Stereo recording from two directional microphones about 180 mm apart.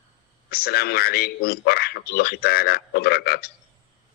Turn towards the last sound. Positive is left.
turn(degrees=60)  # may be behind; listen again after turning